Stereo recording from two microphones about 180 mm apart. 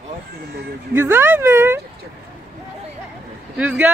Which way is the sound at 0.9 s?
10° right (ahead or behind).